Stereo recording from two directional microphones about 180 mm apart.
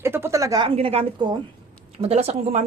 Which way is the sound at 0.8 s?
30° right (ahead or behind).